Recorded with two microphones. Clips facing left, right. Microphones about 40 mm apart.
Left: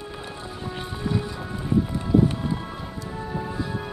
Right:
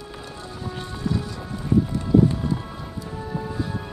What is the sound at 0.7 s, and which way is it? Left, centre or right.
Music, centre.